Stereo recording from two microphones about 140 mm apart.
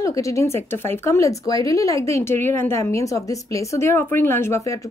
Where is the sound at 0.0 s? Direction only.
20° left (ahead or behind).